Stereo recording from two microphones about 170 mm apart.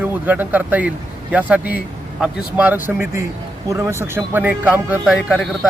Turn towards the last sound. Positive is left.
turn(degrees=0)  # may be behind; listen again after turning